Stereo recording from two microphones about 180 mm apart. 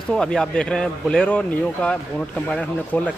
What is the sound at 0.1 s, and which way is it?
Speech, 5° left (ahead or behind).